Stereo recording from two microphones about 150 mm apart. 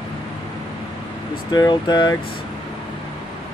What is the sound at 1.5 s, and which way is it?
Speech, 25° left (ahead or behind).